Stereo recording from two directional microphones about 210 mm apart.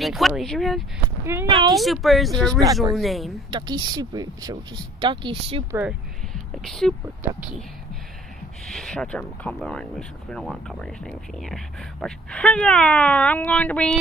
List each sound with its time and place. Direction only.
0.0 s speech: centre (ahead or behind)
1.2 s speech: 10° right (ahead or behind)
1.7 s speech: centre (ahead or behind)
3.4 s speech: 20° right (ahead or behind)
6.6 s speech: centre (ahead or behind)
8.7 s speech: 5° left (ahead or behind)